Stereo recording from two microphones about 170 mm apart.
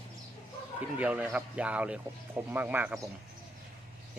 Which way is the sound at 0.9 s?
10° right (ahead or behind).